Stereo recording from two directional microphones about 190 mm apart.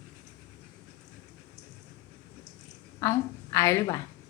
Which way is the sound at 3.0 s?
15° left (ahead or behind).